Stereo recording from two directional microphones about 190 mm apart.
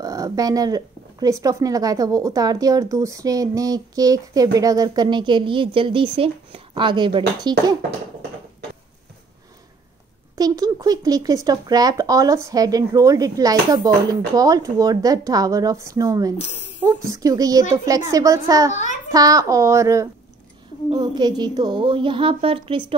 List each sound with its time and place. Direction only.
0.0 s speech: 20° right (ahead or behind)
10.3 s a woman's voice: 20° right (ahead or behind)
18.7 s a child's voice: 40° left (ahead or behind)
19.1 s a woman's voice: 20° right (ahead or behind)